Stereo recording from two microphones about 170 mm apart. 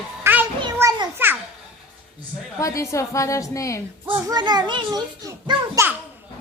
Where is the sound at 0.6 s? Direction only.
25° right (ahead or behind).